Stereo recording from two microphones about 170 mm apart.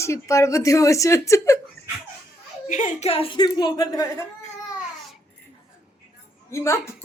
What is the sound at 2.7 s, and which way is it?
Speech, 50° left (ahead or behind).